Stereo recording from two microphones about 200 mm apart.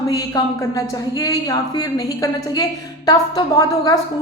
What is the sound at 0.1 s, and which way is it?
A woman's voice, 15° left (ahead or behind).